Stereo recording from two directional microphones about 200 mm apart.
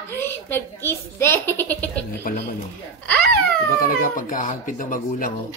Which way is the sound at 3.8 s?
40° left (ahead or behind).